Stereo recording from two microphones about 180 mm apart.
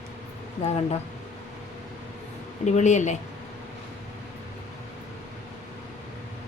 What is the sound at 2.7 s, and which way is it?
Speech, 40° left (ahead or behind).